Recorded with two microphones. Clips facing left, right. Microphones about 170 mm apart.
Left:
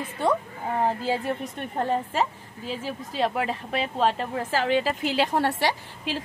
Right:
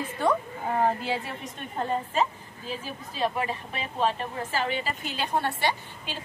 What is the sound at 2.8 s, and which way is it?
A woman's voice, 80° left.